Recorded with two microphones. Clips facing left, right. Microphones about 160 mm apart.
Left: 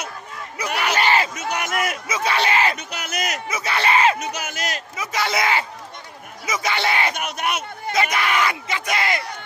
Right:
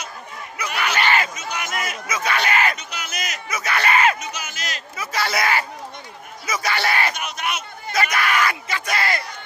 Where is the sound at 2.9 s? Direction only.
55° left (ahead or behind).